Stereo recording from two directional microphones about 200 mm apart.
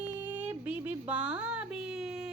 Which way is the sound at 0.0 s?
10° right (ahead or behind).